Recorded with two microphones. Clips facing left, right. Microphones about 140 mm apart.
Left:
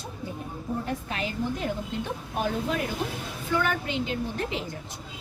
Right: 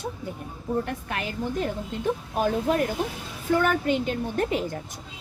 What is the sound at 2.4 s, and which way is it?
A woman's voice, 45° right (ahead or behind).